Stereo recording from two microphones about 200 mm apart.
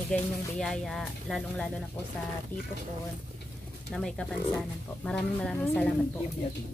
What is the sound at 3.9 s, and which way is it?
Speech, centre (ahead or behind).